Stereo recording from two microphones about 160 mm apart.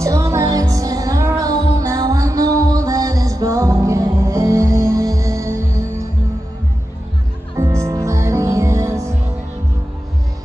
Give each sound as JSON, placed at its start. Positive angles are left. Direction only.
{"t": 0.0, "sound": "music", "side_deg": -20}
{"t": 7.5, "sound": "music", "side_deg": -20}